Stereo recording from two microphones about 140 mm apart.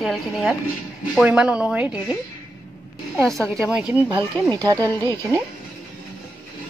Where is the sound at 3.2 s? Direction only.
5° left (ahead or behind).